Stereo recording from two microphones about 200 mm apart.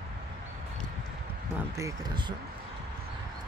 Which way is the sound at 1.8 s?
20° right (ahead or behind).